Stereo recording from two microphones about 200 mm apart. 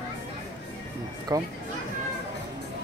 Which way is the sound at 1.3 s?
20° right (ahead or behind).